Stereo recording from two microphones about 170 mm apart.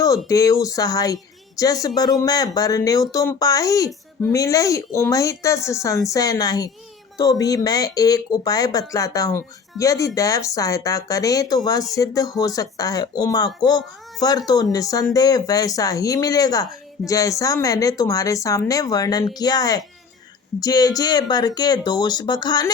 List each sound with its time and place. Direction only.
0.3 s speech: 20° left (ahead or behind)